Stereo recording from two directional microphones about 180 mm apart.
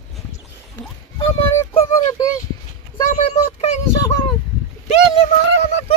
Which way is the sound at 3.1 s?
35° left (ahead or behind).